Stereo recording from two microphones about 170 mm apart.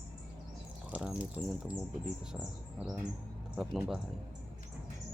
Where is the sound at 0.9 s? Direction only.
10° right (ahead or behind).